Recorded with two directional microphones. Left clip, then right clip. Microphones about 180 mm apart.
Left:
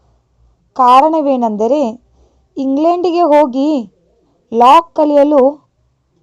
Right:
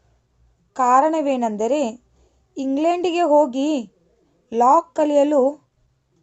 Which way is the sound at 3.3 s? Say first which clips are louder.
Left 5 dB; 25° right (ahead or behind).